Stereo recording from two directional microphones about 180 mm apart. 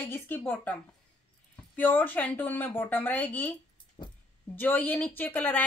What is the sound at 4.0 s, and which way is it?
Speech, 25° left (ahead or behind).